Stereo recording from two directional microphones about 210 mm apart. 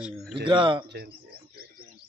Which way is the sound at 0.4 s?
20° right (ahead or behind).